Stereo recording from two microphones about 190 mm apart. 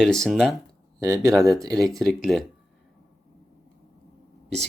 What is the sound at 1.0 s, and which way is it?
Speech, 15° right (ahead or behind).